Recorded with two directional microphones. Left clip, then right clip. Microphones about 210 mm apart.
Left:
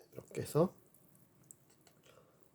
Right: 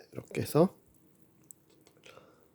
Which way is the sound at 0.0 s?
30° right (ahead or behind).